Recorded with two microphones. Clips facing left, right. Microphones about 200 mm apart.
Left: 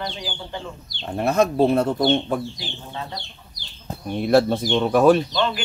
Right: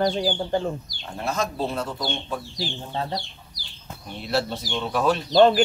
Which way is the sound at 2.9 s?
35° right (ahead or behind).